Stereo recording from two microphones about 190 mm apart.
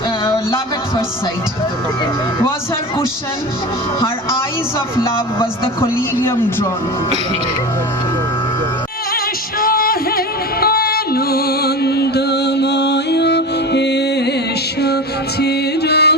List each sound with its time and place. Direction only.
5.8 s a man's voice: 10° left (ahead or behind)
9.6 s music: 50° left (ahead or behind)
15.4 s music: 60° left (ahead or behind)